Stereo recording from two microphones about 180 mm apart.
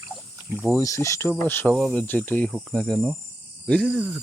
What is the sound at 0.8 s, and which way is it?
Speech, 15° left (ahead or behind).